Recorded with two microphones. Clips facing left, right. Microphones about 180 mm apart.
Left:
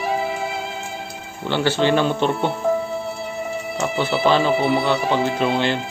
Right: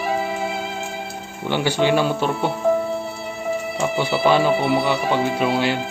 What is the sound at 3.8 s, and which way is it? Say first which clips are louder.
Speech: left 1 dB; centre (ahead or behind).